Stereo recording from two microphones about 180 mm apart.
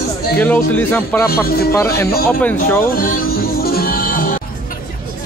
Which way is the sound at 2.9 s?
50° left (ahead or behind).